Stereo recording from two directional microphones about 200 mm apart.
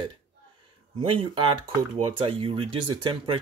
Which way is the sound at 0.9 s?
25° right (ahead or behind).